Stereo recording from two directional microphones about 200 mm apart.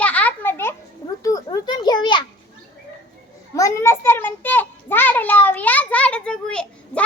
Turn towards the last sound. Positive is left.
turn(degrees=5)  # may be behind; listen again after turning